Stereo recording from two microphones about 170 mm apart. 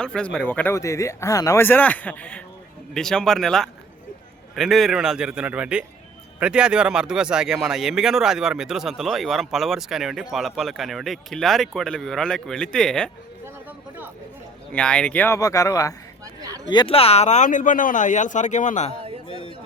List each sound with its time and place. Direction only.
0.0 s speech: 5° left (ahead or behind)
13.4 s a sound: 10° right (ahead or behind)
14.7 s speech: 5° left (ahead or behind)
16.2 s a sound: 20° right (ahead or behind)
16.6 s speech: 30° left (ahead or behind); by 18.9 s 45° left (ahead or behind)
19.3 s speech: 30° left (ahead or behind)